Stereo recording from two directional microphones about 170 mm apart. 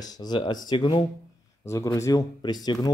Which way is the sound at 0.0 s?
25° left (ahead or behind).